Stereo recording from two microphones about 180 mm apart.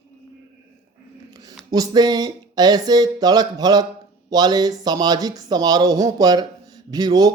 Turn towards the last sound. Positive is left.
turn(degrees=-20)  # may be behind; listen again after turning